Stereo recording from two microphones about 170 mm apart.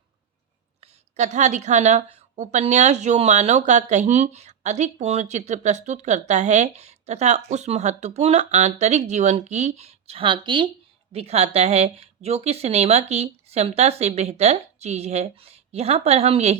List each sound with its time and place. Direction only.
0.8 s a woman's voice: 45° right (ahead or behind)